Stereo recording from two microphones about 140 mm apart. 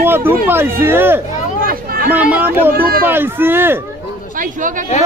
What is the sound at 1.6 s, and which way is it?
Hubbub, 90° right.